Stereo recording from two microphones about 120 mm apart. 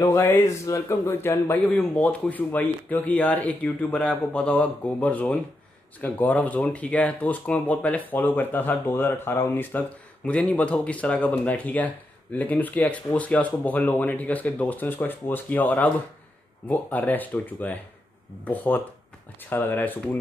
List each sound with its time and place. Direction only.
0.2 s speech: 20° left (ahead or behind)